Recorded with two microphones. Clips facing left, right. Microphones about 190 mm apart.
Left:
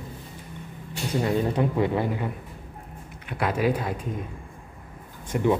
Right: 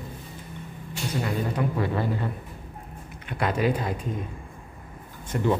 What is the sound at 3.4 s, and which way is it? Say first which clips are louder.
Speech: even; 5° left (ahead or behind).